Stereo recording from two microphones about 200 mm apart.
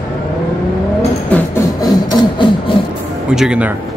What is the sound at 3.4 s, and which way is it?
Speech, 5° right (ahead or behind).